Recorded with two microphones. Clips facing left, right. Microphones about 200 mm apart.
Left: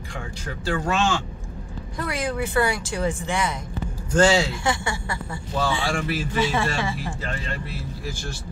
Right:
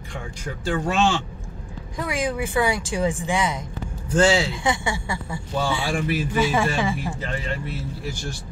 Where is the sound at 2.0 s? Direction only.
15° right (ahead or behind).